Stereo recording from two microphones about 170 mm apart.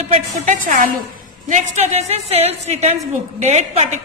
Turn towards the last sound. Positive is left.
turn(degrees=-40)  # may be behind; listen again after turning